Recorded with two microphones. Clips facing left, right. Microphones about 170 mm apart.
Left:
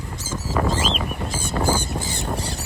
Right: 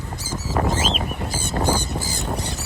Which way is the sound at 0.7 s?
Centre (ahead or behind).